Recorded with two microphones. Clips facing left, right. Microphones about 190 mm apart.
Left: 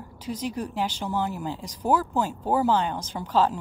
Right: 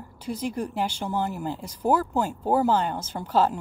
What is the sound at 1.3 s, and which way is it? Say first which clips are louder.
Speech: right 1 dB; 50° right (ahead or behind).